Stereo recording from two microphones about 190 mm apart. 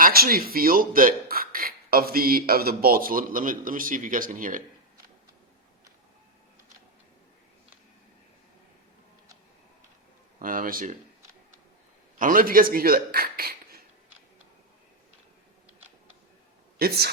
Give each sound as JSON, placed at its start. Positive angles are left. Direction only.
{"t": 0.0, "sound": "speech", "side_deg": -50}
{"t": 10.4, "sound": "speech", "side_deg": -45}
{"t": 12.2, "sound": "speech", "side_deg": -50}
{"t": 16.7, "sound": "speech", "side_deg": -55}